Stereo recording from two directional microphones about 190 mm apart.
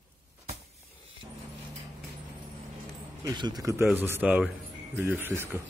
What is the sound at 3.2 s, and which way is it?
Speech, 20° right (ahead or behind).